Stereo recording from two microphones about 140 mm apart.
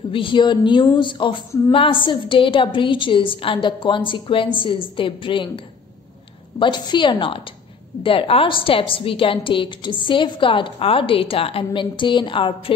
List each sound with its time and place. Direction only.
0.1 s a woman's voice: 35° left (ahead or behind)
6.6 s a woman's voice: 35° left (ahead or behind)